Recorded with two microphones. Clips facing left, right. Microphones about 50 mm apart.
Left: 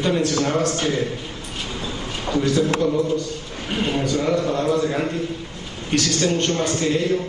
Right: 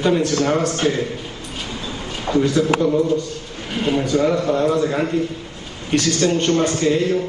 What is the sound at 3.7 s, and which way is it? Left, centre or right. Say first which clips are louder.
A man's voice: right 3 dB; centre.